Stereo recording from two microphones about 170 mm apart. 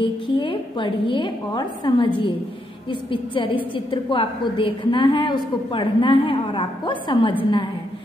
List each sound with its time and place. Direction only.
0.0 s a woman's voice: 30° left (ahead or behind)